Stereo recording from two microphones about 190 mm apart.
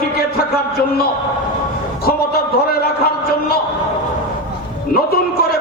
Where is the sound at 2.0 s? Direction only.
55° left (ahead or behind).